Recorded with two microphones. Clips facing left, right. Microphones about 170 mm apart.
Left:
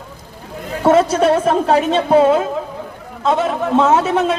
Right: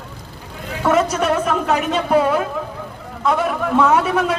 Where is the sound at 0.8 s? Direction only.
30° left (ahead or behind).